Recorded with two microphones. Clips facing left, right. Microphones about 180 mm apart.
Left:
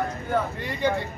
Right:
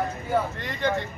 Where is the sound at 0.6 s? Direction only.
10° left (ahead or behind).